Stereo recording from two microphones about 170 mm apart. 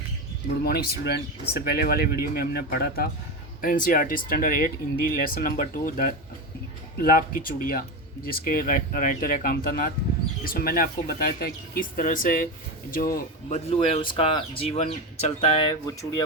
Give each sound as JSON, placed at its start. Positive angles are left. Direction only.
{"t": 0.6, "sound": "speech", "side_deg": 65}
{"t": 13.5, "sound": "speech", "side_deg": 40}
{"t": 15.7, "sound": "speech", "side_deg": 20}